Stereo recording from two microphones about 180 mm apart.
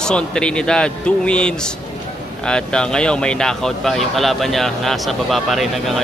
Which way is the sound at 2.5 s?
5° left (ahead or behind).